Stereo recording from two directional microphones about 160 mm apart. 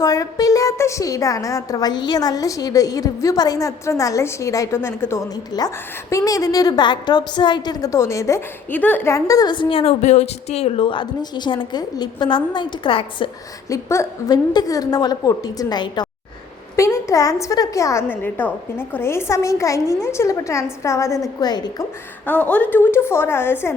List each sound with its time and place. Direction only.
0.0 s a woman's voice: 20° left (ahead or behind)
13.7 s a woman's voice: 20° left (ahead or behind)
22.3 s a woman's voice: 10° left (ahead or behind)